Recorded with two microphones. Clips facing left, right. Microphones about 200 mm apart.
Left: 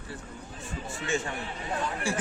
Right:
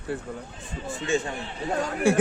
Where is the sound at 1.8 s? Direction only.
50° right (ahead or behind).